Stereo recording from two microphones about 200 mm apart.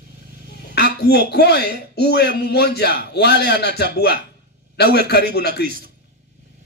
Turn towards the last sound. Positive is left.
turn(degrees=55)  # may be behind; listen again after turning